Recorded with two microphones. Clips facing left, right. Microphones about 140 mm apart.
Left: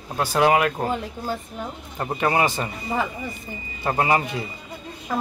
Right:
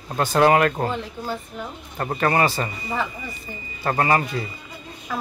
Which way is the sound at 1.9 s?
10° left (ahead or behind).